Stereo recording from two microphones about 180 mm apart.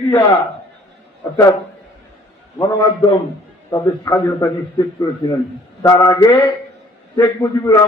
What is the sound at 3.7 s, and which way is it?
A man's voice, 15° left (ahead or behind).